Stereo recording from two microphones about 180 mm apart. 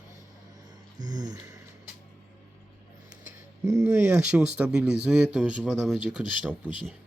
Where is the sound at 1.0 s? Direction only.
25° right (ahead or behind).